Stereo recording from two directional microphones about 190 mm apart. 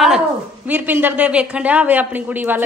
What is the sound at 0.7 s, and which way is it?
Speech, 10° right (ahead or behind).